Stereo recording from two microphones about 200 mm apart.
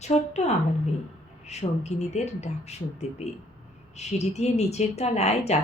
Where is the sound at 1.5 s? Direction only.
35° left (ahead or behind).